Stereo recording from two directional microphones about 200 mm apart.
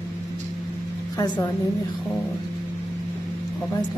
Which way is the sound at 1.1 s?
20° left (ahead or behind).